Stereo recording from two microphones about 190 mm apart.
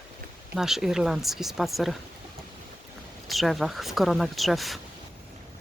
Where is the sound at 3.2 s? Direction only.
Centre (ahead or behind).